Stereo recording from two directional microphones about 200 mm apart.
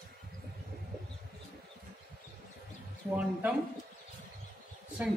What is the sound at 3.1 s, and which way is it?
Speech, 5° right (ahead or behind).